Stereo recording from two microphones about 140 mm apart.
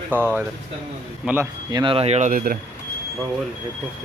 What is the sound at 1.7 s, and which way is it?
Speech, 35° right (ahead or behind).